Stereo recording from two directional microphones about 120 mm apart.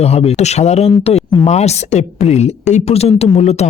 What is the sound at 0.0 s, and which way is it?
Speech, 60° left (ahead or behind).